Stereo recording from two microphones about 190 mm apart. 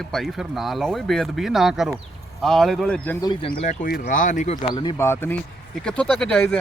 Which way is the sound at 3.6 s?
45° left (ahead or behind).